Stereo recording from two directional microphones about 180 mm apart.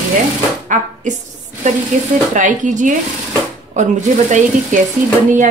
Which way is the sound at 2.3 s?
45° right (ahead or behind).